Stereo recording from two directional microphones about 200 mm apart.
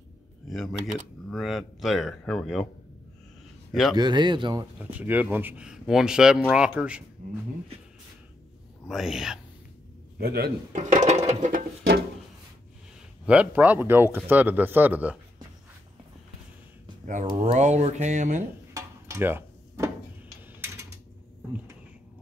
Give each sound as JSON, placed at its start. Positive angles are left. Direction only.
{"t": 0.5, "sound": "speech", "side_deg": 0}
{"t": 3.9, "sound": "speech", "side_deg": -20}
{"t": 4.7, "sound": "speech", "side_deg": -10}
{"t": 7.2, "sound": "a sound", "side_deg": -40}
{"t": 8.8, "sound": "speech", "side_deg": 0}
{"t": 10.1, "sound": "a man's voice", "side_deg": -50}
{"t": 10.8, "sound": "speech", "side_deg": -35}
{"t": 13.2, "sound": "speech", "side_deg": -5}
{"t": 17.0, "sound": "speech", "side_deg": -40}
{"t": 18.7, "sound": "a sound", "side_deg": -15}